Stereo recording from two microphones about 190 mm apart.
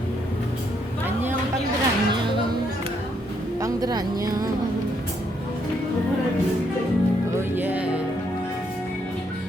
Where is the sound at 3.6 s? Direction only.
20° right (ahead or behind).